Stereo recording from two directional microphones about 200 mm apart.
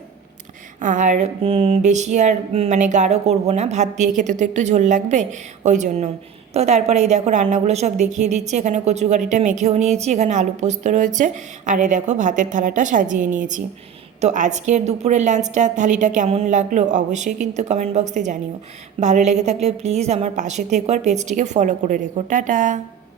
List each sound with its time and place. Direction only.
0.8 s a woman's voice: 40° right (ahead or behind)